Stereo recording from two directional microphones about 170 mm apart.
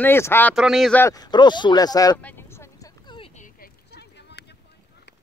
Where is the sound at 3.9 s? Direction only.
80° left.